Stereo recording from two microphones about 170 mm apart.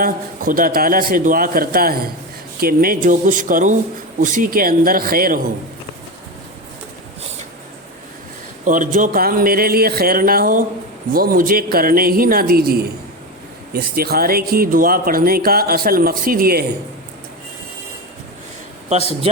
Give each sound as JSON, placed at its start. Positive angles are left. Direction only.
{"t": 0.0, "sound": "speech", "side_deg": -55}
{"t": 8.6, "sound": "speech", "side_deg": -50}